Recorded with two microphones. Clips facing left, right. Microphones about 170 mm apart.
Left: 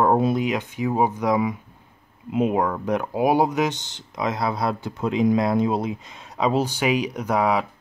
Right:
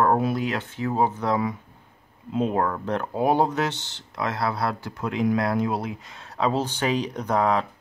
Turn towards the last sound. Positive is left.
turn(degrees=10)  # may be behind; listen again after turning